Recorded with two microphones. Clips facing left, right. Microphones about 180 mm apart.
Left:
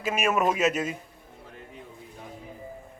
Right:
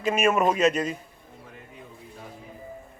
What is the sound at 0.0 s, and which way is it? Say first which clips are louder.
Speech: right 3 dB; centre (ahead or behind).